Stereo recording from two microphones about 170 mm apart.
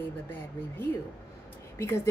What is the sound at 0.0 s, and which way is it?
A woman's voice, 10° left (ahead or behind).